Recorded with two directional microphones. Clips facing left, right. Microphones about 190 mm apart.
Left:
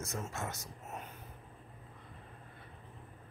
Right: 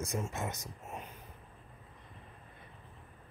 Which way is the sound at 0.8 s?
10° right (ahead or behind).